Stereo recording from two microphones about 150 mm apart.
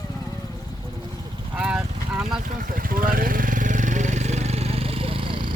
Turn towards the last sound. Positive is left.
turn(degrees=-35)  # may be behind; listen again after turning